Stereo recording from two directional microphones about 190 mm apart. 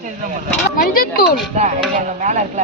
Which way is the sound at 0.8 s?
45° left (ahead or behind).